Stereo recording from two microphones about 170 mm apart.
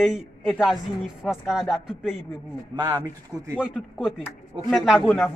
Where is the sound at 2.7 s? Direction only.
25° right (ahead or behind).